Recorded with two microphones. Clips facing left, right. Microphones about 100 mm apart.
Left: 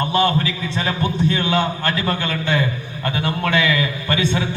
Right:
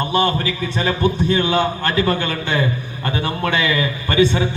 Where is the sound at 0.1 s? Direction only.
35° right (ahead or behind).